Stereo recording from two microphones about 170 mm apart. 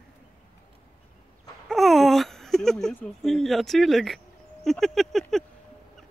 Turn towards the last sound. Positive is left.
turn(degrees=0)  # may be behind; listen again after turning